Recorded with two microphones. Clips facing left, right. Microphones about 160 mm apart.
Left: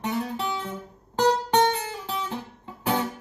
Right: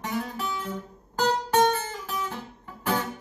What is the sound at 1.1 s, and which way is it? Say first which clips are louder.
Music: left 2 dB; 25° left (ahead or behind).